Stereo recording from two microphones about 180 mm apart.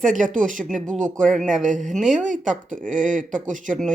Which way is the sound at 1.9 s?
Centre (ahead or behind).